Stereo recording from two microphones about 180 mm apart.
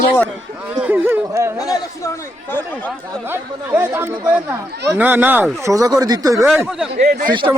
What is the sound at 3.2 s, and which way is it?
Speech, 10° right (ahead or behind).